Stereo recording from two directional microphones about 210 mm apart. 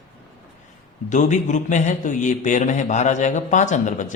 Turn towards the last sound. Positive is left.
turn(degrees=35)  # may be behind; listen again after turning